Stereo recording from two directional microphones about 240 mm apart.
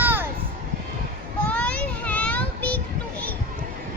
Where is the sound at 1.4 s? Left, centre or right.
Centre.